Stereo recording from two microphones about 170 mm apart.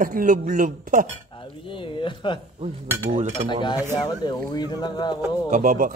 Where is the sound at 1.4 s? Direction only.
30° left (ahead or behind).